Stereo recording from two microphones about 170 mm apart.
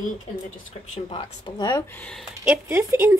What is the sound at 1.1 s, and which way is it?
Speech, 20° left (ahead or behind).